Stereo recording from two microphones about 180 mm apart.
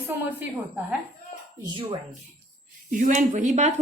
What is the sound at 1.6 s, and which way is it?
Speech, 25° right (ahead or behind).